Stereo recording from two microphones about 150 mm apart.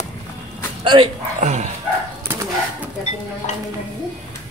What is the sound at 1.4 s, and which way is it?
Dog, 50° right (ahead or behind).